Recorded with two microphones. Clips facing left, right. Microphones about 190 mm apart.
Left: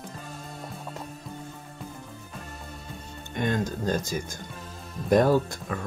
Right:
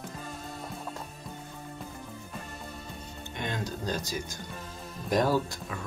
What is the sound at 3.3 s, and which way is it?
Speech, 50° left (ahead or behind).